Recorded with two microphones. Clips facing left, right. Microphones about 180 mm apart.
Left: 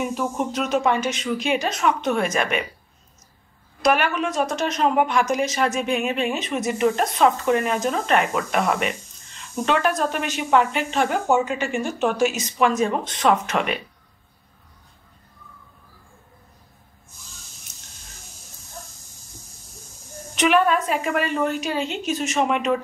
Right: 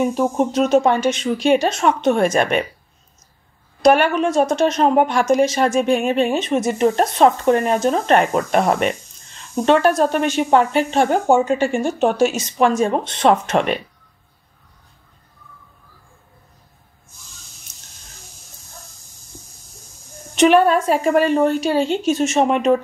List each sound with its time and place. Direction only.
0.1 s a woman's voice: 30° right (ahead or behind)
3.8 s a woman's voice: 30° right (ahead or behind)
20.3 s a woman's voice: 35° right (ahead or behind)